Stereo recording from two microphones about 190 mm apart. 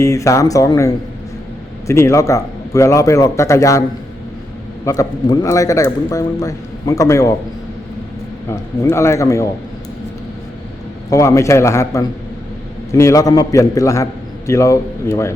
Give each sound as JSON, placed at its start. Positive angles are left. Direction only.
{"t": 0.0, "sound": "speech", "side_deg": 15}
{"t": 1.9, "sound": "speech", "side_deg": 15}
{"t": 4.9, "sound": "speech", "side_deg": 20}
{"t": 8.4, "sound": "speech", "side_deg": 15}
{"t": 11.1, "sound": "speech", "side_deg": 15}